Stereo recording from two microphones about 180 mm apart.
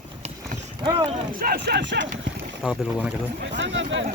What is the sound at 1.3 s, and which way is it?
Speech, 60° right (ahead or behind).